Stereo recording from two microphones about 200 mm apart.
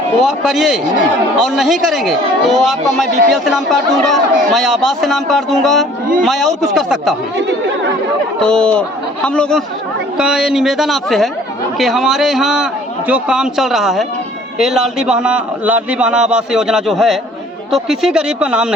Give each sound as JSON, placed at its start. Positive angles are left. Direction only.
{"t": 0.2, "sound": "a man's voice", "side_deg": 0}
{"t": 8.4, "sound": "a man's voice", "side_deg": 5}